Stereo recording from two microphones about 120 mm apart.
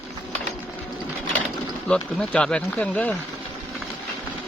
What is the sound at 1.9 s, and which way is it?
Speech, 5° left (ahead or behind).